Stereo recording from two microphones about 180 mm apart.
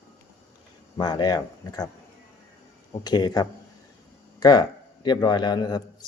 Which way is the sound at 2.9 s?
20° left (ahead or behind).